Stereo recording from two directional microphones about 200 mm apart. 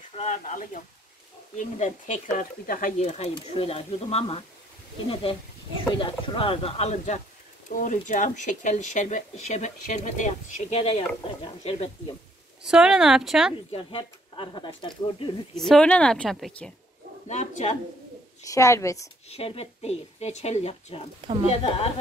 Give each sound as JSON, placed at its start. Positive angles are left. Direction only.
{"t": 0.1, "sound": "speech", "side_deg": 35}
{"t": 5.9, "sound": "speech", "side_deg": 25}
{"t": 12.6, "sound": "a woman's voice", "side_deg": -5}
{"t": 13.7, "sound": "speech", "side_deg": 25}
{"t": 15.5, "sound": "a woman's voice", "side_deg": 0}
{"t": 17.3, "sound": "speech", "side_deg": 35}
{"t": 18.4, "sound": "a woman's voice", "side_deg": 15}
{"t": 19.2, "sound": "speech", "side_deg": 30}